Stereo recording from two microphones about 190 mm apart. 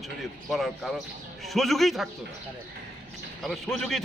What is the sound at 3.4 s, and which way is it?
Speech, centre (ahead or behind).